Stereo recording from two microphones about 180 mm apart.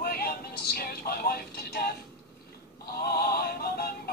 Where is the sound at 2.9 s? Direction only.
60° left (ahead or behind).